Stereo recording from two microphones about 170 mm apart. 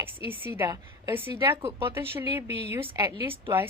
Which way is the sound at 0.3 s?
15° right (ahead or behind).